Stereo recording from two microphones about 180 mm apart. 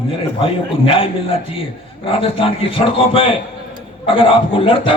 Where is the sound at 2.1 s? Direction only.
30° left (ahead or behind).